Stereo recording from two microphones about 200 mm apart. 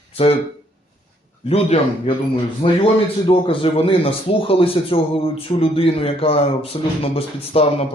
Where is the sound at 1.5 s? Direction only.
30° left (ahead or behind).